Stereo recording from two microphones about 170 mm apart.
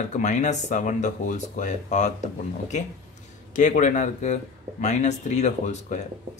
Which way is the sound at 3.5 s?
45° left (ahead or behind).